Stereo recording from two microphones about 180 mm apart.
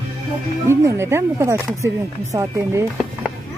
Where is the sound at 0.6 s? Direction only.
15° right (ahead or behind).